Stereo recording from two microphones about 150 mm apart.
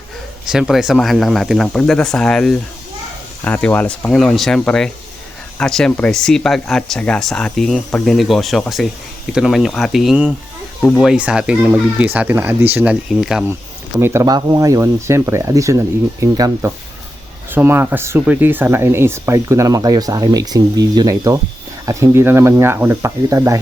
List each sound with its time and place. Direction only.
0.4 s speech: 5° right (ahead or behind)
14.0 s speech: 20° right (ahead or behind)